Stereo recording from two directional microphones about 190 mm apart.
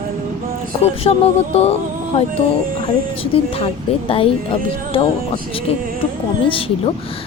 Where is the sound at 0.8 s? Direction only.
30° left (ahead or behind).